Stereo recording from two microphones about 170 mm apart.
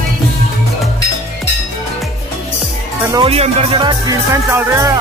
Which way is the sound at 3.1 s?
30° right (ahead or behind).